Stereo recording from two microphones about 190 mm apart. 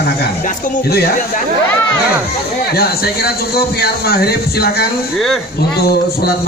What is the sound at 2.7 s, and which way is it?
Speech, 55° left (ahead or behind).